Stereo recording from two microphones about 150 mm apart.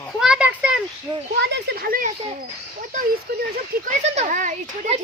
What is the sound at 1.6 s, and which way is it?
Speech, 80° right.